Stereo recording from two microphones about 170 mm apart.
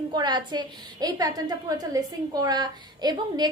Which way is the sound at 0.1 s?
25° right (ahead or behind).